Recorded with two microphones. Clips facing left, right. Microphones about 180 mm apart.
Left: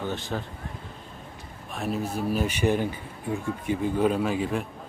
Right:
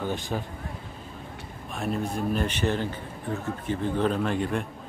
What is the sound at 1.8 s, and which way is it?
Speech, 5° left (ahead or behind).